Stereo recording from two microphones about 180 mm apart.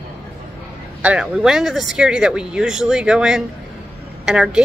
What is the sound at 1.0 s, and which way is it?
Speech, 5° right (ahead or behind).